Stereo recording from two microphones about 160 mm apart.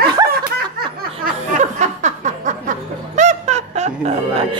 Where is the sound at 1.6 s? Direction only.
50° right (ahead or behind).